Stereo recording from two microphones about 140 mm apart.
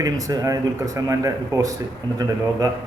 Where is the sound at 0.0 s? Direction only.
25° right (ahead or behind).